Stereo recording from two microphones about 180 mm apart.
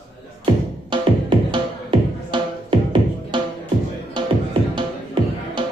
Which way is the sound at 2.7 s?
25° right (ahead or behind).